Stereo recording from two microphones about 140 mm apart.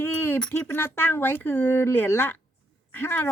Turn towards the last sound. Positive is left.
turn(degrees=15)  # may be behind; listen again after turning